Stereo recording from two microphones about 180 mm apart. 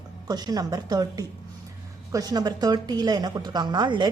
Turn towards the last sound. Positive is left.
turn(degrees=-25)  # may be behind; listen again after turning